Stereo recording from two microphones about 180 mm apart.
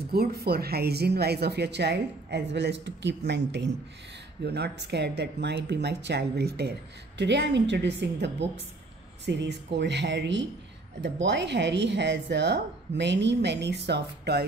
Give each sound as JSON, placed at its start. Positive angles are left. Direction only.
{"t": 0.1, "sound": "speech", "side_deg": -60}